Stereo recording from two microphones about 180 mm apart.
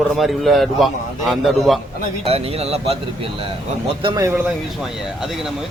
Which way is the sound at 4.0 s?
25° right (ahead or behind).